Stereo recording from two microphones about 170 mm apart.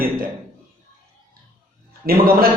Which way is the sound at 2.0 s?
60° right (ahead or behind).